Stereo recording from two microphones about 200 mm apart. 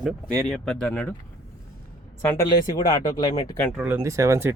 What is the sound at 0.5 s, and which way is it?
Speech, 5° left (ahead or behind).